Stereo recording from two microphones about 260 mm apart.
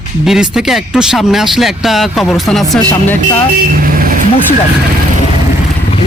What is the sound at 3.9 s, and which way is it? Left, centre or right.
Speech, right.